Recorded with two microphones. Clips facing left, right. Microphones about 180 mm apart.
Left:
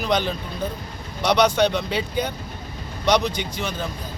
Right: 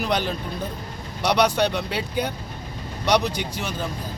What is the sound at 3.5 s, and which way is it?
Speech, 5° right (ahead or behind).